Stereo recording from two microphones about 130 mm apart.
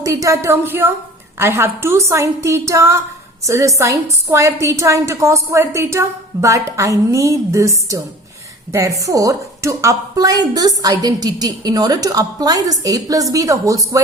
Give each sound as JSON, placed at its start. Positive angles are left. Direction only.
{"t": 0.0, "sound": "a woman's voice", "side_deg": -25}